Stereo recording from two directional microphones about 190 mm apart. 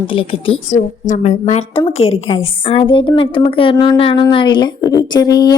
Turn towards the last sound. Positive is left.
turn(degrees=20)  # may be behind; listen again after turning